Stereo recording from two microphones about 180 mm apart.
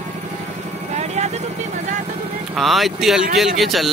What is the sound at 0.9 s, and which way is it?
Vehicle, 40° right (ahead or behind).